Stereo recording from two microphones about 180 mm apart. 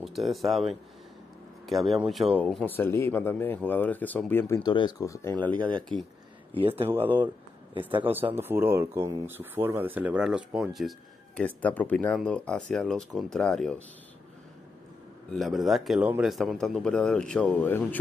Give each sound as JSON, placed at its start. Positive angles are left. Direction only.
{"t": 0.0, "sound": "speech", "side_deg": 0}
{"t": 1.7, "sound": "speech", "side_deg": 0}
{"t": 6.9, "sound": "speech", "side_deg": -10}
{"t": 15.2, "sound": "speech", "side_deg": 0}